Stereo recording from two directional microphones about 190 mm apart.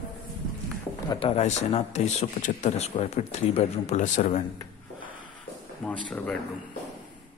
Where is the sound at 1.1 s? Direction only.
30° left (ahead or behind).